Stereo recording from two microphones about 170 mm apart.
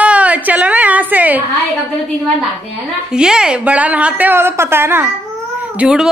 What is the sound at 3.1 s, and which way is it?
A woman's voice, 5° right (ahead or behind).